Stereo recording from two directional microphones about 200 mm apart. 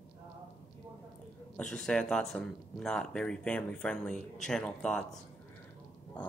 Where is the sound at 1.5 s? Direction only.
5° left (ahead or behind).